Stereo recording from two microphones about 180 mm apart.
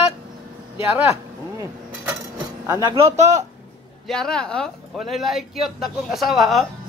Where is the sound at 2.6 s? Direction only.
20° right (ahead or behind); by 3.4 s 40° right (ahead or behind).